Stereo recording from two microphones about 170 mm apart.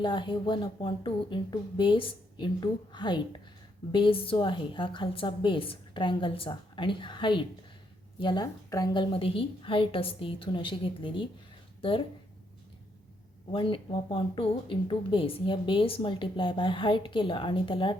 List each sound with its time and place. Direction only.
0.0 s a woman's voice: 30° left (ahead or behind)
13.5 s speech: 30° left (ahead or behind)